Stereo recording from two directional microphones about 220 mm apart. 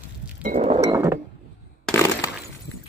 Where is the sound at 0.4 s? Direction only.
40° right (ahead or behind).